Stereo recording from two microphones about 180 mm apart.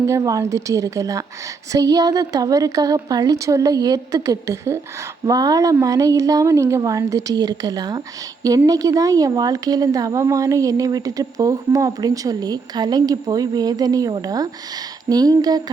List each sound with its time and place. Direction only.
0.0 s a woman's voice: 15° right (ahead or behind)